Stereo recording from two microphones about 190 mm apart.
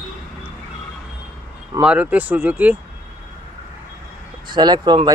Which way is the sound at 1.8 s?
5° right (ahead or behind).